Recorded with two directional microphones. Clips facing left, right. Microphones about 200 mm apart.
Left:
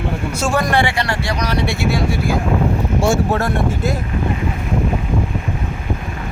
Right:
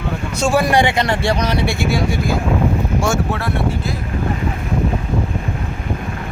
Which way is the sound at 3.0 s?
30° left (ahead or behind).